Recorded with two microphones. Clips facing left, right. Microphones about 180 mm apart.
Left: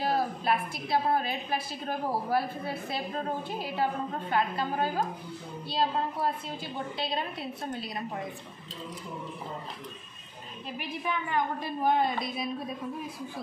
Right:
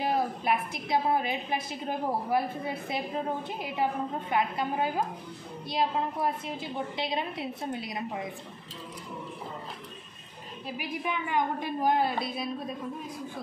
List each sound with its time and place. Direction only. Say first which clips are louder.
0.0 s a woman's voice: even; 20° right (ahead or behind)
10.8 s a woman's voice: even; 15° right (ahead or behind)